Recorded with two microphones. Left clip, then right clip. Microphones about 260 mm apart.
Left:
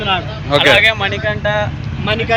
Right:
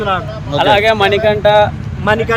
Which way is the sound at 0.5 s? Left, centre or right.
Right.